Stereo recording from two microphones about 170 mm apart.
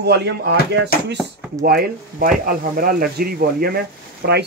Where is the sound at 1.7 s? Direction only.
60° right (ahead or behind).